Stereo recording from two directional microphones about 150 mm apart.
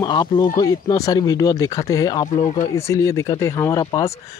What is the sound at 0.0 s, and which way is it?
Speech, 25° left (ahead or behind).